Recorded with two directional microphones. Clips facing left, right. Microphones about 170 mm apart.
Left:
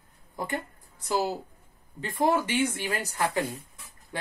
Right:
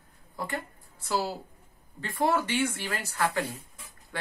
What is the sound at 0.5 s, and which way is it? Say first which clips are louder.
A woman's voice: left 2 dB; 15° left (ahead or behind).